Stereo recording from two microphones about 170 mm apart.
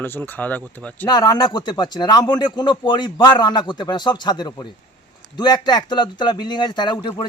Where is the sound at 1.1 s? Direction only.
25° left (ahead or behind).